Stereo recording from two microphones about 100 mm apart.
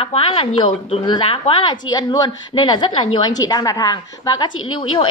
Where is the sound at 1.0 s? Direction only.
55° left (ahead or behind).